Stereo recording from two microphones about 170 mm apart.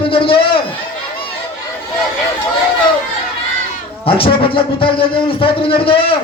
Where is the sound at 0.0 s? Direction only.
30° left (ahead or behind).